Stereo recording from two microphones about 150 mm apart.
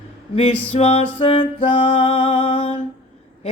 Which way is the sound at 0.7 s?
40° left (ahead or behind).